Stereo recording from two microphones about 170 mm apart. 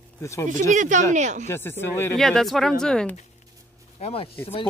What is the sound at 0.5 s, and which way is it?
Speech, 45° right (ahead or behind).